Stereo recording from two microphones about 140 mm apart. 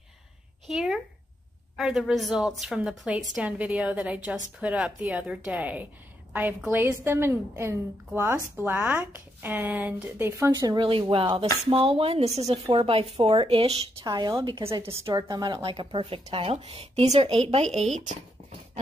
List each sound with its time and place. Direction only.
0.7 s a woman's voice: 5° right (ahead or behind)
10.5 s speech: 30° right (ahead or behind)
14.0 s speech: 30° right (ahead or behind)
15.0 s speech: 25° right (ahead or behind); by 17.6 s 50° right (ahead or behind)